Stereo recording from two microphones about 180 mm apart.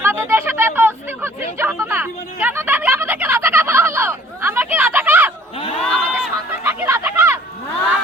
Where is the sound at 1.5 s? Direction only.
10° right (ahead or behind).